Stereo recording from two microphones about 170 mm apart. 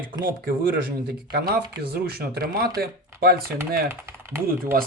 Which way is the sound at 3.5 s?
15° right (ahead or behind).